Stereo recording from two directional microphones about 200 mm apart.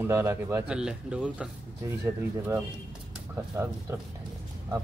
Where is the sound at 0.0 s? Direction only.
10° right (ahead or behind).